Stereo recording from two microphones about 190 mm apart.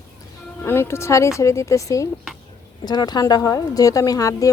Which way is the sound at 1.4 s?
15° left (ahead or behind).